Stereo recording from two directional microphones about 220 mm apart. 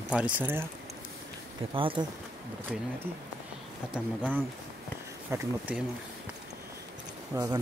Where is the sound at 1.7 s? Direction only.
25° right (ahead or behind).